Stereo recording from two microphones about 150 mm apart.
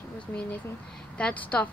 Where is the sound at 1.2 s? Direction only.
10° left (ahead or behind).